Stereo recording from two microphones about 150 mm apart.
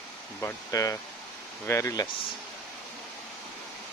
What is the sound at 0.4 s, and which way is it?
Speech, 20° left (ahead or behind).